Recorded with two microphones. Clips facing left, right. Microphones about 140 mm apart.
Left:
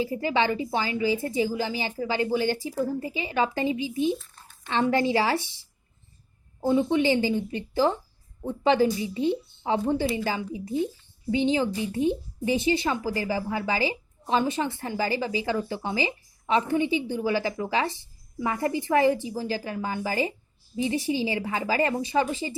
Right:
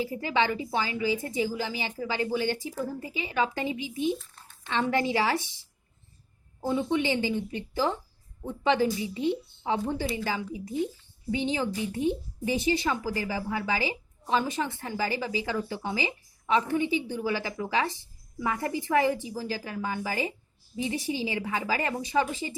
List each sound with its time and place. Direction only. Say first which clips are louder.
0.0 s a woman's voice: left 2 dB; 30° left (ahead or behind)
6.6 s a woman's voice: left 4 dB; 30° left (ahead or behind)